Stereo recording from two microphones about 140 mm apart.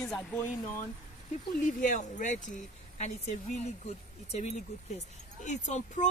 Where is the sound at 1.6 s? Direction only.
65° left (ahead or behind).